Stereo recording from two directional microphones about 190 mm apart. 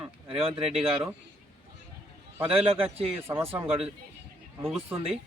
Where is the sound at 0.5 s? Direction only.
5° right (ahead or behind).